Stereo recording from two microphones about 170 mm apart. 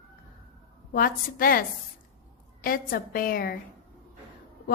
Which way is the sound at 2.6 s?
55° left (ahead or behind).